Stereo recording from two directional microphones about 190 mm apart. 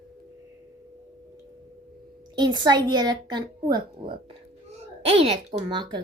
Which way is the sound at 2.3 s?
20° right (ahead or behind).